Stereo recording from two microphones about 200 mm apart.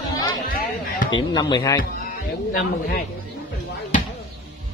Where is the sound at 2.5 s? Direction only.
45° left (ahead or behind).